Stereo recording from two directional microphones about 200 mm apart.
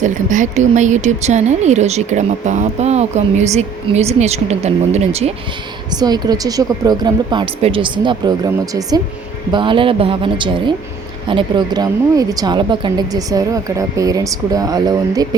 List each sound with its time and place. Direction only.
0.0 s speech: 40° right (ahead or behind)
6.0 s a woman's voice: 20° right (ahead or behind)